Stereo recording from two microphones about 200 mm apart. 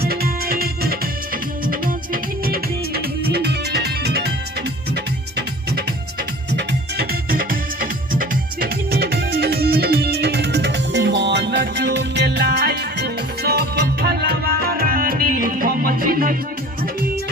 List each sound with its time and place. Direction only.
0.0 s music: 50° right (ahead or behind)
2.4 s music: 50° right (ahead or behind)
6.5 s music: 55° right (ahead or behind)